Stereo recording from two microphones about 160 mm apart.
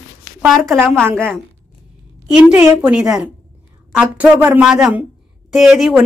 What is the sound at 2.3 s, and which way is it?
A woman's voice, 10° right (ahead or behind).